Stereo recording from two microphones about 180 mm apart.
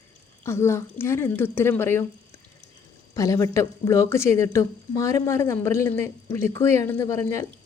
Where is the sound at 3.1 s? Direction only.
20° left (ahead or behind).